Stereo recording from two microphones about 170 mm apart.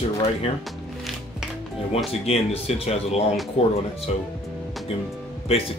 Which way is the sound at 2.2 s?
35° left (ahead or behind).